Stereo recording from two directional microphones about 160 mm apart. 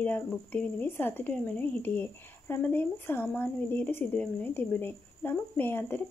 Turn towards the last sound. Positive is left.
turn(degrees=15)  # may be behind; listen again after turning